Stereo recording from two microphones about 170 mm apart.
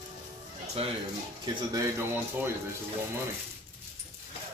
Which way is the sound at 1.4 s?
20° right (ahead or behind).